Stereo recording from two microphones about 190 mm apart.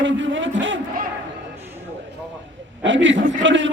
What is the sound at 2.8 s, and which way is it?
Speech, 75° right (ahead or behind).